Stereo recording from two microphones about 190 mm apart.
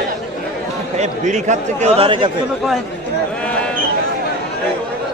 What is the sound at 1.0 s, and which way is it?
A man's voice, 40° right (ahead or behind).